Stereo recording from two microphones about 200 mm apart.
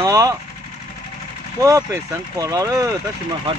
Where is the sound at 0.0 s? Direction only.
15° right (ahead or behind).